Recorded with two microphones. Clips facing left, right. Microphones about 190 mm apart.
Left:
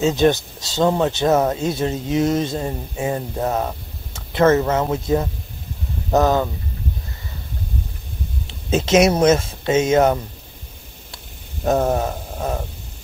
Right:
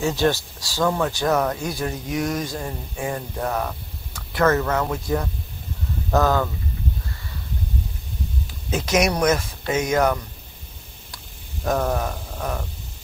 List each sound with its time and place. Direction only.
0.0 s speech: 20° left (ahead or behind)
8.5 s speech: 25° left (ahead or behind)
11.6 s speech: 25° left (ahead or behind)